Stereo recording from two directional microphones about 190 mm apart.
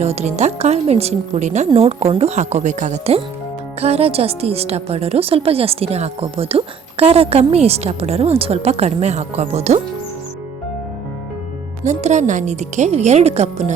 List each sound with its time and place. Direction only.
0.0 s a woman's voice: 35° right (ahead or behind)
11.8 s a woman's voice: 40° right (ahead or behind)